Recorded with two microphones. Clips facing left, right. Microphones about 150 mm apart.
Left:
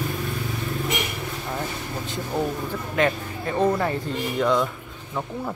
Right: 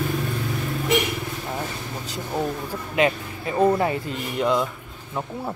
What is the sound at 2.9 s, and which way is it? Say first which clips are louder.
Speech: right 2 dB; 10° right (ahead or behind).